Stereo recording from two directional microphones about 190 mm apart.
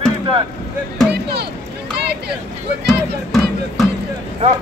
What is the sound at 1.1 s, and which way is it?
Speech, 60° right (ahead or behind).